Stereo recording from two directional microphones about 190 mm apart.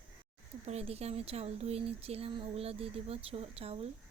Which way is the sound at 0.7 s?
35° right (ahead or behind).